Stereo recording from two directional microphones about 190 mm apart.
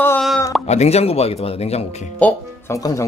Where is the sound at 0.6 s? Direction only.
35° left (ahead or behind).